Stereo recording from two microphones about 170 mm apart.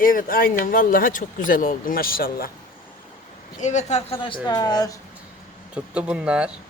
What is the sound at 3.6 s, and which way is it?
Speech, 45° left (ahead or behind).